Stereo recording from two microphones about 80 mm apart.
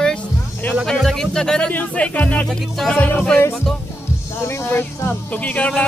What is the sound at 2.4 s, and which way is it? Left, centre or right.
Speech, centre.